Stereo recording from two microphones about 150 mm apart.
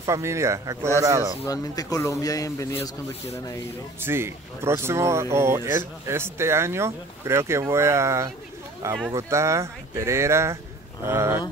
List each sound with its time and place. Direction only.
0.0 s speech: 20° right (ahead or behind)
1.4 s speech: 25° left (ahead or behind)
4.0 s speech: 15° right (ahead or behind)